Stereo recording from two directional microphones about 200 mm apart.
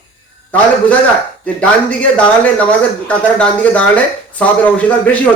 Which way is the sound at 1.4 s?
5° left (ahead or behind).